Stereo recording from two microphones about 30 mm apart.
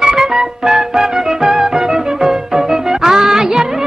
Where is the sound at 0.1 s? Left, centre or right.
Right.